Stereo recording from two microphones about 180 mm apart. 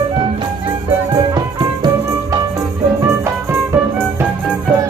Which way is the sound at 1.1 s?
25° right (ahead or behind).